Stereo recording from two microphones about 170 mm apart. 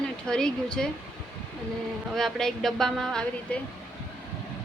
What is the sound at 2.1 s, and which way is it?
A woman's voice, centre (ahead or behind).